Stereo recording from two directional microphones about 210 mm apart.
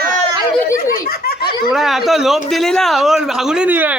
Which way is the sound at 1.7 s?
Centre (ahead or behind).